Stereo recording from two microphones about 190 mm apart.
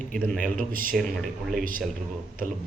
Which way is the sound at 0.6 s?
45° right (ahead or behind).